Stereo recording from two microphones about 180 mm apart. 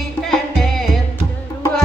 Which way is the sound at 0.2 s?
Centre (ahead or behind).